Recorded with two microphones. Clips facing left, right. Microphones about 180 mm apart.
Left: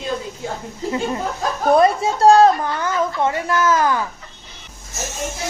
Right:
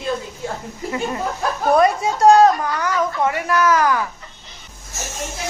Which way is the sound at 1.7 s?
30° left (ahead or behind).